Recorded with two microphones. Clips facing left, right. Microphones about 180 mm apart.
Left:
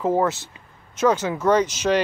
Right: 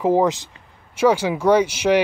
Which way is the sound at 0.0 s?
15° right (ahead or behind).